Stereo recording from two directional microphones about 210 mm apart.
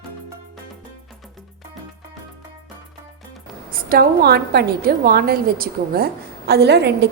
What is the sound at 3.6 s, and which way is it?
A woman's voice, 45° right (ahead or behind).